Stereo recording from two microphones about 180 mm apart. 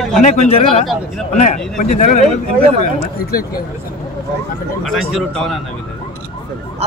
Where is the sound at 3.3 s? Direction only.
60° left (ahead or behind).